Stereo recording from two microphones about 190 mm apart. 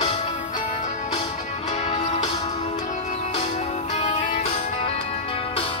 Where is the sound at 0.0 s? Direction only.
35° left (ahead or behind).